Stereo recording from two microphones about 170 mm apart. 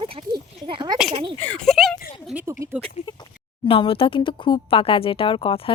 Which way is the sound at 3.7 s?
30° left (ahead or behind).